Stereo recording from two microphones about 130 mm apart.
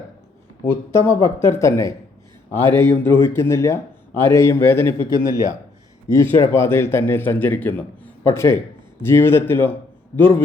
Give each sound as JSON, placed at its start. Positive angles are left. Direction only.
{"t": 0.6, "sound": "speech", "side_deg": 15}
{"t": 6.1, "sound": "a man's voice", "side_deg": 25}